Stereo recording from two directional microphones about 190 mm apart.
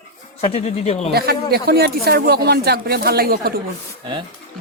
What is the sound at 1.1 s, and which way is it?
Speech, 55° right (ahead or behind).